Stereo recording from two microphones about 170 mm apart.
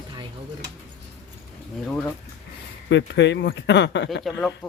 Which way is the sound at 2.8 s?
90° left.